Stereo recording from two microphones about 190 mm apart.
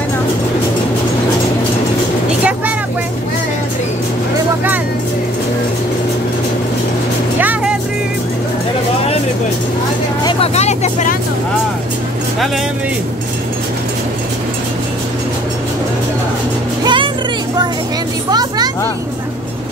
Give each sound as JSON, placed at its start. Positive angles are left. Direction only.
{"t": 7.3, "sound": "music", "side_deg": -10}
{"t": 10.2, "sound": "vehicle", "side_deg": 35}
{"t": 16.8, "sound": "music", "side_deg": -25}
{"t": 18.3, "sound": "a sound", "side_deg": -20}